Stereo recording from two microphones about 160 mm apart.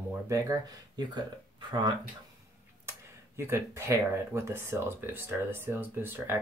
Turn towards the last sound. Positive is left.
turn(degrees=-15)  # may be behind; listen again after turning